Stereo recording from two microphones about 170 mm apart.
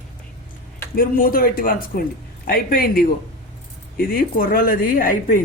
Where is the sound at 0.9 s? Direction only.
60° left (ahead or behind).